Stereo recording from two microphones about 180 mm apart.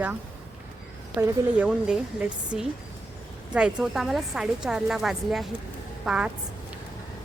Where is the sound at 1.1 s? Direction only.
5° right (ahead or behind).